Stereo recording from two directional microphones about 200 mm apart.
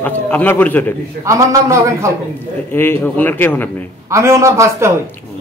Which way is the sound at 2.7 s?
10° left (ahead or behind).